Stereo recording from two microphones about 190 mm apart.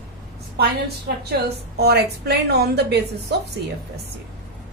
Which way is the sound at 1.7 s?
60° right (ahead or behind).